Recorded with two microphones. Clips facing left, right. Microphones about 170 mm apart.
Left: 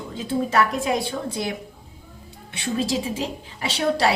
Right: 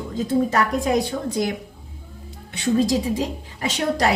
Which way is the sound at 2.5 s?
45° right (ahead or behind).